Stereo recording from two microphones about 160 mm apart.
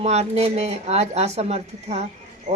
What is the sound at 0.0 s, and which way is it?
A woman's voice, 45° right (ahead or behind).